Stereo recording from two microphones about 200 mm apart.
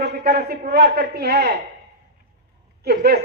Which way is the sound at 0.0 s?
50° right (ahead or behind).